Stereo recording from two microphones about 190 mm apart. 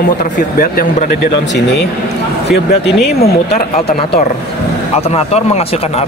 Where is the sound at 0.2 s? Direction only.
45° left (ahead or behind).